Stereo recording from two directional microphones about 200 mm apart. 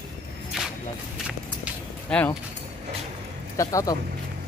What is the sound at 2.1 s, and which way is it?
Speech, 5° left (ahead or behind).